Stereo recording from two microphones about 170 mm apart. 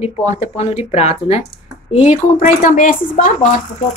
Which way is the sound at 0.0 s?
40° left (ahead or behind).